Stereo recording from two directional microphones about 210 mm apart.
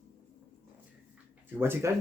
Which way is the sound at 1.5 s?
10° right (ahead or behind).